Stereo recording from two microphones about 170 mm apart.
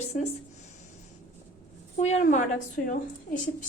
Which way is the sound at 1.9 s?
40° left (ahead or behind).